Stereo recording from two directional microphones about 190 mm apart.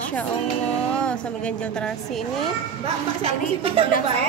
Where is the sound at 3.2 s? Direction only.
30° right (ahead or behind).